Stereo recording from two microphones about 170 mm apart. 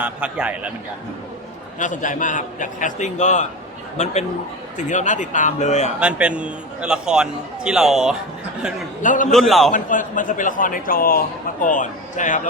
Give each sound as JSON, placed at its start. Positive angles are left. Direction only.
{"t": 0.0, "sound": "a man's voice", "side_deg": -5}
{"t": 1.8, "sound": "a man's voice", "side_deg": 50}
{"t": 6.0, "sound": "a man's voice", "side_deg": -5}
{"t": 9.0, "sound": "a man's voice", "side_deg": 50}
{"t": 9.3, "sound": "a man's voice", "side_deg": 0}
{"t": 9.7, "sound": "a man's voice", "side_deg": 50}